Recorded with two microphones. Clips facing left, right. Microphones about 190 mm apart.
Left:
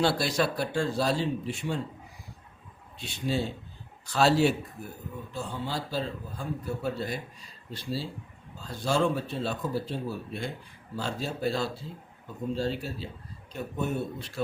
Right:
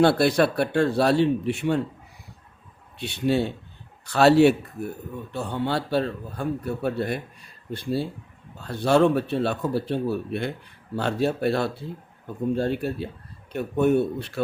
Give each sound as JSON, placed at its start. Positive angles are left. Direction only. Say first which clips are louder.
{"t": 0.0, "sound": "a man's voice", "louder": "right 8 dB", "side_deg": -60}
{"t": 3.0, "sound": "a man's voice", "louder": "right 7 dB", "side_deg": -65}